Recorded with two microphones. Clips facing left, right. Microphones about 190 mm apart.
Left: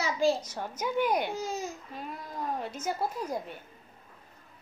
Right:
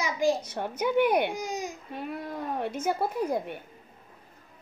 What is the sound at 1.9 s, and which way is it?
A woman's voice, 60° right (ahead or behind).